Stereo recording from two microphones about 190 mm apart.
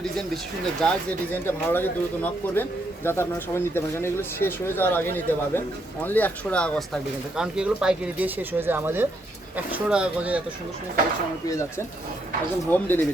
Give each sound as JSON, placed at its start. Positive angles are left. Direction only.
{"t": 0.8, "sound": "speech", "side_deg": 5}
{"t": 11.4, "sound": "speech", "side_deg": 15}